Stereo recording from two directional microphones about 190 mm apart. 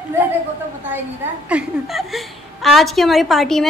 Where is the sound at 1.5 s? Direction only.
5° right (ahead or behind).